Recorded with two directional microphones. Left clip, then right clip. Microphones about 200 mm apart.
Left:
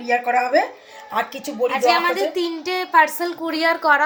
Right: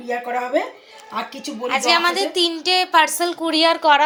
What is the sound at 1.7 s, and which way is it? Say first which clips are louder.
A woman's voice: right 1 dB; 5° right (ahead or behind).